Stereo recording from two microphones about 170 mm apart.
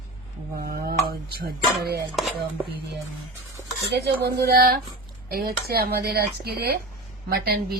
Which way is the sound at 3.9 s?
70° right (ahead or behind).